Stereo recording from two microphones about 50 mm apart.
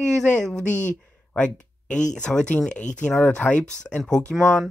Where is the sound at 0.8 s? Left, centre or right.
Left.